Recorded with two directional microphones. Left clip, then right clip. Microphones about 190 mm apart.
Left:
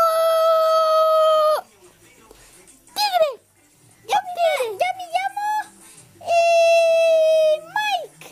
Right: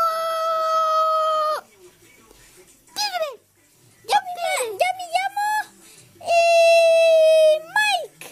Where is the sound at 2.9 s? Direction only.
5° left (ahead or behind).